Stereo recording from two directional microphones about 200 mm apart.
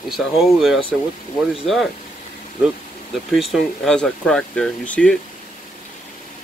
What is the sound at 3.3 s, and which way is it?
Speech, centre (ahead or behind).